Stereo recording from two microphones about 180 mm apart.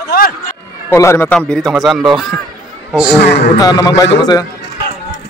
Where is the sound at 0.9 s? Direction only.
15° left (ahead or behind).